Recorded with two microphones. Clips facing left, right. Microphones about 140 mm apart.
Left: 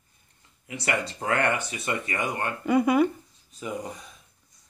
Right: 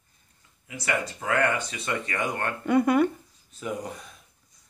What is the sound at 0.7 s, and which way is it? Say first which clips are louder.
Speech: even; 25° left (ahead or behind).